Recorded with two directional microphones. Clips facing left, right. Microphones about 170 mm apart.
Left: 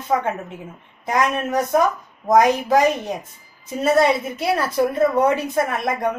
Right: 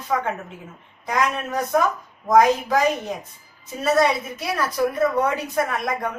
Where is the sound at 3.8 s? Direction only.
25° left (ahead or behind).